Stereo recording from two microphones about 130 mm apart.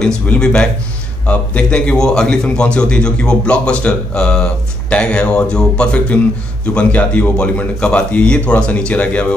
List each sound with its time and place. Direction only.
0.0 s a man's voice: 5° left (ahead or behind)